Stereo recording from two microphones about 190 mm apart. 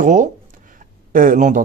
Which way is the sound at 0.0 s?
40° right (ahead or behind).